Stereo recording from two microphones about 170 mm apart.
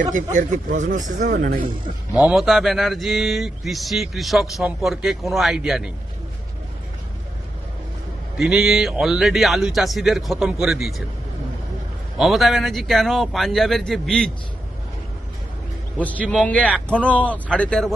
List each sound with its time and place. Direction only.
0.1 s speech: 50° right (ahead or behind)
1.3 s speech: 60° right (ahead or behind)
2.1 s speech: centre (ahead or behind)
8.4 s speech: 5° right (ahead or behind)
12.1 s speech: centre (ahead or behind)
16.0 s speech: 10° left (ahead or behind)